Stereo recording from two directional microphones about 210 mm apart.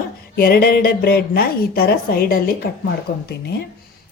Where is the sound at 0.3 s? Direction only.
45° left (ahead or behind).